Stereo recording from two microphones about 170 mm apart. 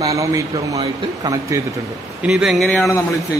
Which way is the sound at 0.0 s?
20° right (ahead or behind).